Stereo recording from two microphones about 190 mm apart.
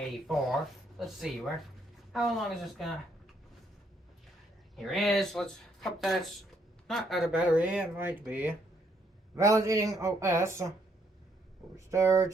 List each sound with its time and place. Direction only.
0.1 s speech: centre (ahead or behind)
4.8 s speech: centre (ahead or behind)
11.9 s speech: 15° right (ahead or behind)